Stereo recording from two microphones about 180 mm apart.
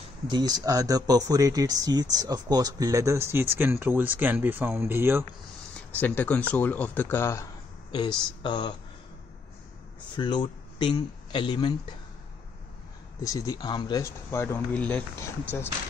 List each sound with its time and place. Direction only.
0.3 s speech: 25° right (ahead or behind)
5.9 s speech: 10° left (ahead or behind)
7.9 s speech: 25° left (ahead or behind)
10.1 s speech: 25° left (ahead or behind)
13.2 s speech: 20° left (ahead or behind)